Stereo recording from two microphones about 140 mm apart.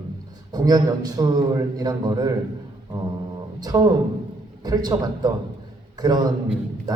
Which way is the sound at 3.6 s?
30° right (ahead or behind).